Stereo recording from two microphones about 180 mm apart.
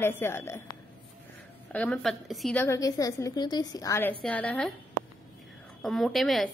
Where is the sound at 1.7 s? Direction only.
5° left (ahead or behind).